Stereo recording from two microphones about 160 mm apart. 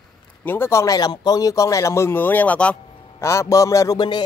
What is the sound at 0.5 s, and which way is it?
A man's voice, 15° left (ahead or behind).